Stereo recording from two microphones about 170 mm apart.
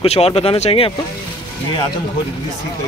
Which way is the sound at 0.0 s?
35° left (ahead or behind).